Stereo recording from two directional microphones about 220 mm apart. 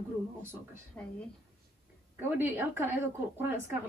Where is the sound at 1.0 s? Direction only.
10° left (ahead or behind).